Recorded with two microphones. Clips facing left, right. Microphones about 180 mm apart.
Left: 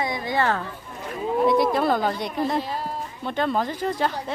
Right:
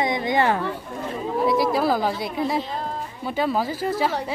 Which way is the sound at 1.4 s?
Centre (ahead or behind).